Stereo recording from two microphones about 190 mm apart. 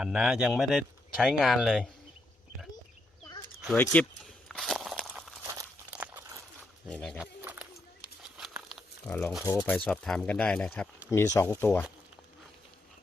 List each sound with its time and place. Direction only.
0.0 s speech: 5° right (ahead or behind)
3.8 s walk: 5° left (ahead or behind)
5.9 s crunch: 10° right (ahead or behind)
6.8 s speech: 5° left (ahead or behind)
7.2 s a sound: 5° right (ahead or behind)
8.7 s crumpling: 5° left (ahead or behind)
9.4 s speech: 20° left (ahead or behind)
9.6 s speech: 5° left (ahead or behind)
11.1 s speech: 15° left (ahead or behind)